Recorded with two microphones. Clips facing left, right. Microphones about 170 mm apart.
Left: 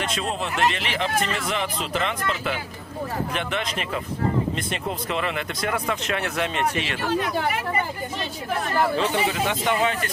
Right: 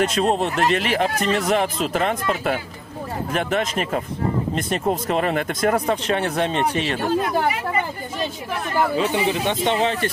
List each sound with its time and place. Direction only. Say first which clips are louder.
0.0 s speech: right 8 dB; 45° right (ahead or behind)
8.7 s speech: right 3 dB; 10° right (ahead or behind); by 10.1 s 30° right (ahead or behind)